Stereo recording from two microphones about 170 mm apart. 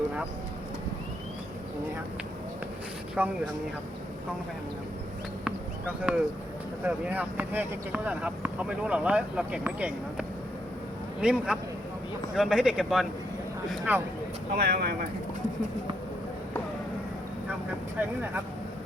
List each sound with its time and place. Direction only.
3.2 s speech: 10° right (ahead or behind)
5.5 s a sound: 10° right (ahead or behind)
6.8 s speech: 10° right (ahead or behind)
14.5 s speech: 65° right (ahead or behind)